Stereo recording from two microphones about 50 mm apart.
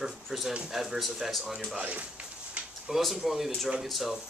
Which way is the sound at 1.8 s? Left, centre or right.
Right.